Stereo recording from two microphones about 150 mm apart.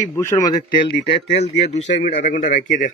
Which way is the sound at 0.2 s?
20° left (ahead or behind).